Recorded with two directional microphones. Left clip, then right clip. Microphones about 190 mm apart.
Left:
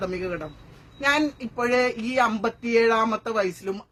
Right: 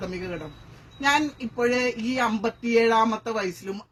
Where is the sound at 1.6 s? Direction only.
15° left (ahead or behind).